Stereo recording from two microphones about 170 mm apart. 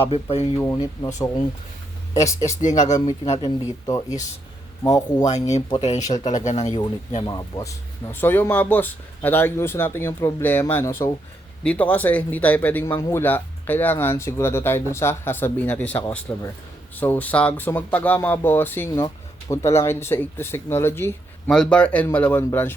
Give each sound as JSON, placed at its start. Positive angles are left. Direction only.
{"t": 0.0, "sound": "speech", "side_deg": 35}
{"t": 0.5, "sound": "speech", "side_deg": 20}
{"t": 2.6, "sound": "speech", "side_deg": 45}
{"t": 3.8, "sound": "speech", "side_deg": 20}
{"t": 5.2, "sound": "speech", "side_deg": 40}
{"t": 7.3, "sound": "speech", "side_deg": 25}